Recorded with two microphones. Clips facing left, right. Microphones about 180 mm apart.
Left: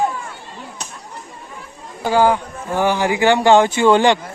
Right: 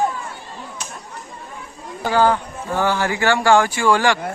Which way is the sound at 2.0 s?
15° left (ahead or behind).